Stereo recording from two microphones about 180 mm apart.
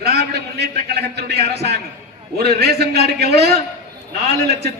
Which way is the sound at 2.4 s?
65° right (ahead or behind).